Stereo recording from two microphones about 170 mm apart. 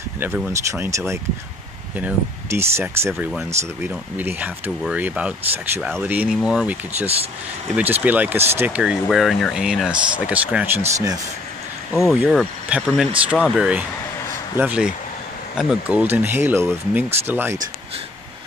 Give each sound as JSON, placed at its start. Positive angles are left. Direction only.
{"t": 0.5, "sound": "speech", "side_deg": -15}
{"t": 12.1, "sound": "speech", "side_deg": -5}